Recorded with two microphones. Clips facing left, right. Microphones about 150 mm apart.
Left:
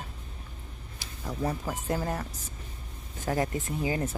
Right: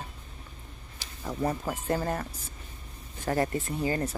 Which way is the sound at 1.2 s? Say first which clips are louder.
Right 2 dB; 10° right (ahead or behind).